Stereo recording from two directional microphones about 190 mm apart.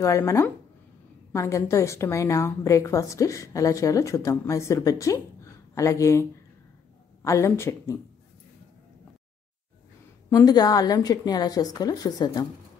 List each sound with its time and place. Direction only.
0.0 s a woman's voice: 15° left (ahead or behind)
7.2 s a woman's voice: 15° left (ahead or behind)
10.3 s a woman's voice: 20° left (ahead or behind)